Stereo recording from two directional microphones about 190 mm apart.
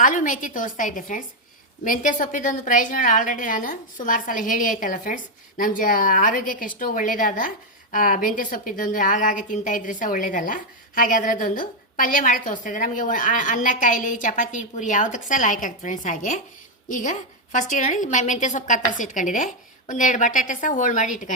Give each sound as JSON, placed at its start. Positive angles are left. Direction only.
{"t": 0.0, "sound": "a woman's voice", "side_deg": 45}